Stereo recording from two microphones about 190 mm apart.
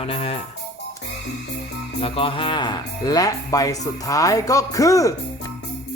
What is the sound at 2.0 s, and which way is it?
Speech, 30° left (ahead or behind).